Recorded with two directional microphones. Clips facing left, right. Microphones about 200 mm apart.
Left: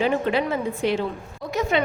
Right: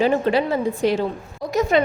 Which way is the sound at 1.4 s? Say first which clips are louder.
Right 5 dB; 40° right (ahead or behind).